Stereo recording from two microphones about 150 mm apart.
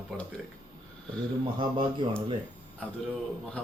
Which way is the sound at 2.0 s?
30° right (ahead or behind).